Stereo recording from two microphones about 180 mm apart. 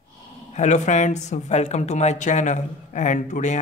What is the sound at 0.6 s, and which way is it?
Speech, 40° left (ahead or behind).